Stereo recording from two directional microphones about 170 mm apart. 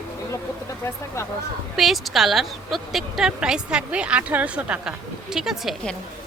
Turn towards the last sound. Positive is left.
turn(degrees=0)  # may be behind; listen again after turning